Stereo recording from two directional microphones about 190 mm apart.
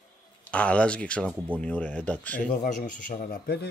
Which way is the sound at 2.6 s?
45° left (ahead or behind).